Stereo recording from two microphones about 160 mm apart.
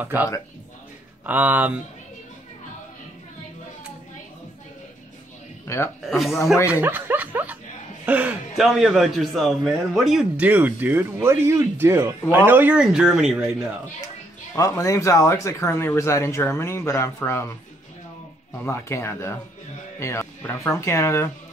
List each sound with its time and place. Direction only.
1.2 s a man's voice: 10° right (ahead or behind)
5.7 s speech: 20° left (ahead or behind)
6.0 s speech: centre (ahead or behind)
6.7 s a man's voice: 10° right (ahead or behind)
14.0 s speech: 20° left (ahead or behind)
18.6 s speech: 15° left (ahead or behind)